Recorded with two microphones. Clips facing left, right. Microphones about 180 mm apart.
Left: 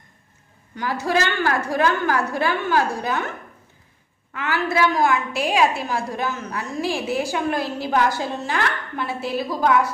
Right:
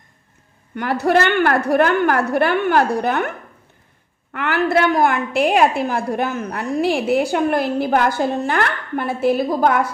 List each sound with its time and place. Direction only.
0.7 s a woman's voice: 60° right (ahead or behind)